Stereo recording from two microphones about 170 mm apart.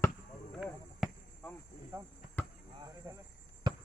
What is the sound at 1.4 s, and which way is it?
Speech, 10° left (ahead or behind).